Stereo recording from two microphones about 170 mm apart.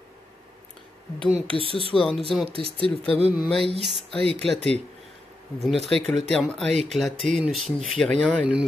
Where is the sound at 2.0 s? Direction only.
Centre (ahead or behind).